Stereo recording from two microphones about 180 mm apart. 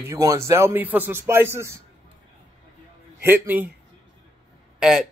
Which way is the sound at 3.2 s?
10° right (ahead or behind).